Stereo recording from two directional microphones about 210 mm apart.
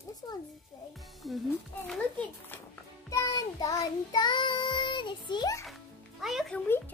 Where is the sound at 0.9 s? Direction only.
Centre (ahead or behind).